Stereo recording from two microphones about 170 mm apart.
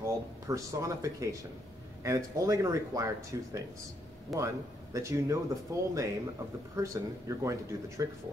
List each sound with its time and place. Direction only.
0.0 s speech: 20° right (ahead or behind)